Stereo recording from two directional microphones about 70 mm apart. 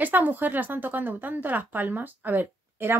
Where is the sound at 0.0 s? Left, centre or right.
Right.